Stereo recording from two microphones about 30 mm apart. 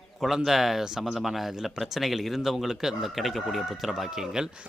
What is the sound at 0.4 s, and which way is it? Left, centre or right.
Speech, centre.